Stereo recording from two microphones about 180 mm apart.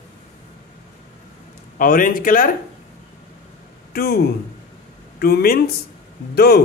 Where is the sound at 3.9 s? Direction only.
60° left (ahead or behind).